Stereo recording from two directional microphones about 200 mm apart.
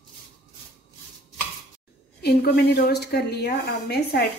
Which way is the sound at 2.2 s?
50° left (ahead or behind).